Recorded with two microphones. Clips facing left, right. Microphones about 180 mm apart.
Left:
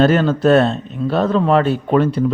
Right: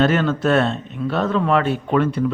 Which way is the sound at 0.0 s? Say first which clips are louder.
Left 4 dB; 35° left (ahead or behind).